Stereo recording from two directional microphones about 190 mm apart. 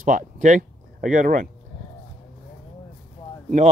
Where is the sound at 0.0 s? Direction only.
40° right (ahead or behind).